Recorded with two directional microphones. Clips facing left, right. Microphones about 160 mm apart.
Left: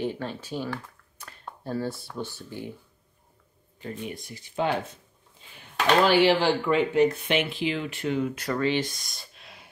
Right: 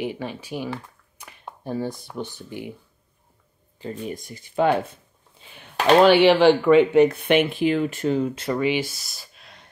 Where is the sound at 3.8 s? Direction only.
35° right (ahead or behind); by 4.7 s 55° right (ahead or behind).